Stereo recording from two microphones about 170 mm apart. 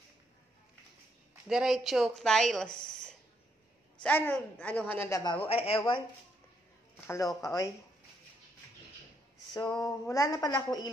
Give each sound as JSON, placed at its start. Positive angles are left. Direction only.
{"t": 1.5, "sound": "a woman's voice", "side_deg": -5}
{"t": 5.5, "sound": "a woman's voice", "side_deg": 35}
{"t": 7.1, "sound": "a woman's voice", "side_deg": 20}
{"t": 9.8, "sound": "a woman's voice", "side_deg": 20}